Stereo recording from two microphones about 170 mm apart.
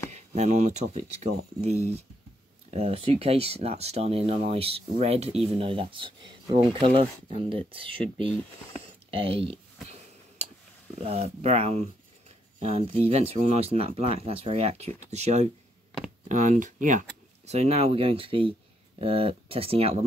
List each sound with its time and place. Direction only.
0.1 s speech: 40° right (ahead or behind)
2.7 s speech: 35° right (ahead or behind)
11.0 s speech: 40° right (ahead or behind)